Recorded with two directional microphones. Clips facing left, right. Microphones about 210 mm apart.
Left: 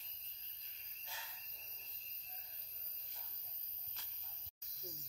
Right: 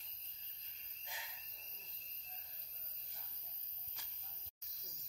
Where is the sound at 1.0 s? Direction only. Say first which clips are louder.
Right 1 dB; 15° right (ahead or behind).